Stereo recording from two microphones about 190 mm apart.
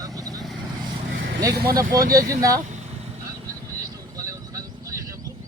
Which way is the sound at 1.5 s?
55° right (ahead or behind).